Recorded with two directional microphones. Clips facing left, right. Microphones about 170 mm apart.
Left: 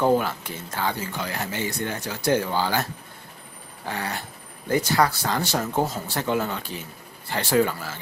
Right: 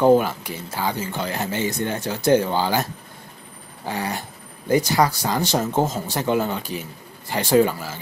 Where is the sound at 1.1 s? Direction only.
25° right (ahead or behind).